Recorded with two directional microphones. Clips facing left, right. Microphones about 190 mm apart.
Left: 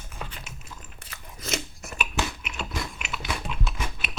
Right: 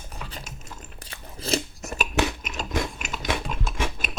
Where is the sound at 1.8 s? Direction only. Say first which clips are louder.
Right 3 dB; 45° right (ahead or behind).